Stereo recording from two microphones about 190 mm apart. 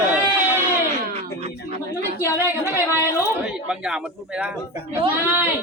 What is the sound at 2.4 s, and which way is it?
Speech, 15° right (ahead or behind).